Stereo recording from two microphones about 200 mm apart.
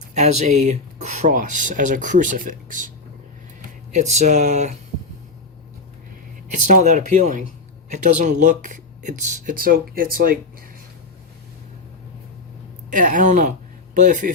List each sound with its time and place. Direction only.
0.1 s speech: 35° right (ahead or behind)
3.9 s speech: 35° right (ahead or behind)
6.7 s speech: 40° right (ahead or behind)
12.9 s speech: 40° right (ahead or behind)